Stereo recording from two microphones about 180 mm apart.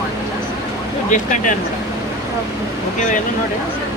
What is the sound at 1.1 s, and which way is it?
Speech, 45° left (ahead or behind).